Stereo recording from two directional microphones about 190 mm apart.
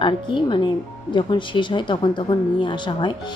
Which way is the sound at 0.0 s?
25° left (ahead or behind).